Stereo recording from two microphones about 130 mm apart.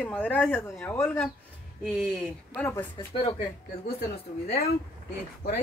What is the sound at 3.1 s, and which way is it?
Speech, 45° left (ahead or behind).